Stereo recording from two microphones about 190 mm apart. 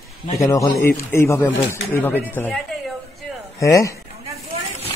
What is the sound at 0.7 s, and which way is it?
Speech, 55° left (ahead or behind).